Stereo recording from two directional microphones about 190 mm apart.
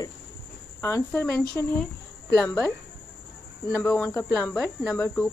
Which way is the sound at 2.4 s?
5° left (ahead or behind).